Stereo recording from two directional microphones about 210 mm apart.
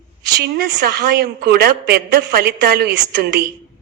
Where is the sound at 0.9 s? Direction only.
50° right (ahead or behind).